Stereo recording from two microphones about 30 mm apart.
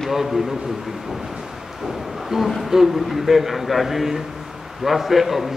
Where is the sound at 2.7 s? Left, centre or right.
Centre.